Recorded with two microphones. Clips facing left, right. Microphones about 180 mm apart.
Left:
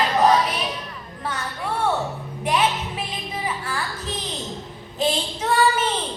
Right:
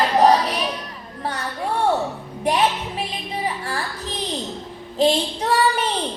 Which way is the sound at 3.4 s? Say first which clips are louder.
Right 2 dB; 35° right (ahead or behind).